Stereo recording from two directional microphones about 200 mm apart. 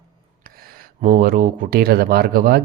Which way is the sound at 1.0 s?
40° right (ahead or behind).